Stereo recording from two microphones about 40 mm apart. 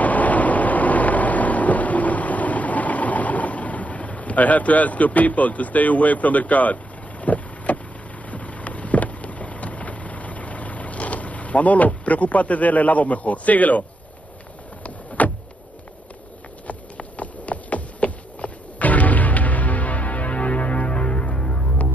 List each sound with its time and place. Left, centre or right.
0.0 s vehicle: left
16.6 s a sound: left
21.4 s music: left